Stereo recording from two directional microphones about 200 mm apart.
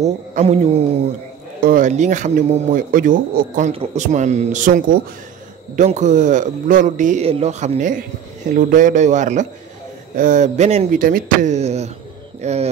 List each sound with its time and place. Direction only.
0.0 s a man's voice: 35° right (ahead or behind)